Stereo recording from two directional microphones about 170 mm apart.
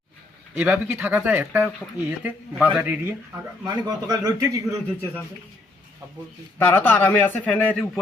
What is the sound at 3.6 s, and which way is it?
A man's voice, 20° right (ahead or behind).